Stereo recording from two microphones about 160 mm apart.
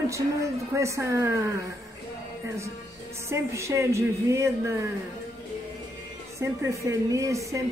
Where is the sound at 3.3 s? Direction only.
20° right (ahead or behind).